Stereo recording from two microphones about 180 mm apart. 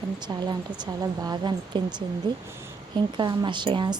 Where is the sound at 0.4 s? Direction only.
20° right (ahead or behind).